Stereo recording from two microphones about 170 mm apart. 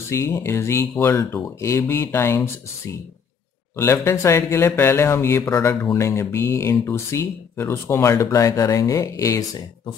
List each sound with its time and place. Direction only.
0.1 s speech: 15° left (ahead or behind)
3.7 s speech: 15° left (ahead or behind)